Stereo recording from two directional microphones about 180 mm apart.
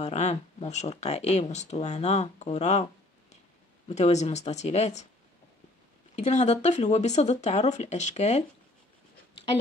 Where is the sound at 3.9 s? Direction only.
40° left (ahead or behind).